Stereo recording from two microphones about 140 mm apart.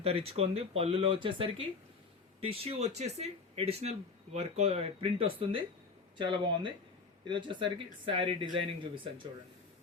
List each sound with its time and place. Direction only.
0.0 s speech: 45° right (ahead or behind)